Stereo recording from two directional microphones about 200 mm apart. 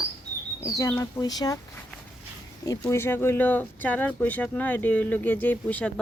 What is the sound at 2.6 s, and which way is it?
Speech, 15° left (ahead or behind).